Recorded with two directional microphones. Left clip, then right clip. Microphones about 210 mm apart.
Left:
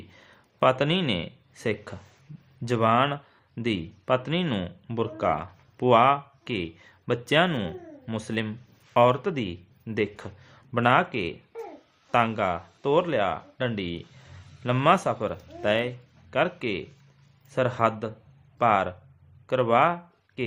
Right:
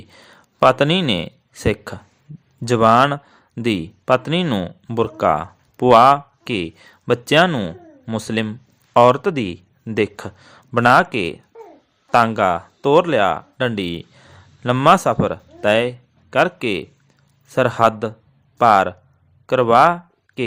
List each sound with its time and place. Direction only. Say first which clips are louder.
0.1 s a man's voice: right 7 dB; 35° right (ahead or behind)